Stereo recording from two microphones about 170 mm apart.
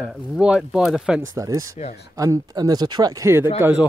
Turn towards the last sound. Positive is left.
turn(degrees=-10)  # may be behind; listen again after turning